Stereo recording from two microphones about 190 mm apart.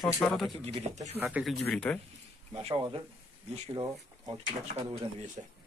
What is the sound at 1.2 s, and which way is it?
Speech, centre (ahead or behind).